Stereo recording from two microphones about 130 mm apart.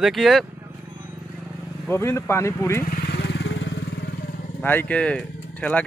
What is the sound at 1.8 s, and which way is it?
Speech, 20° left (ahead or behind).